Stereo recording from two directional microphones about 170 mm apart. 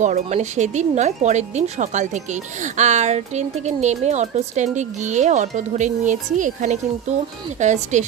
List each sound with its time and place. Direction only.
0.0 s speech: 45° right (ahead or behind)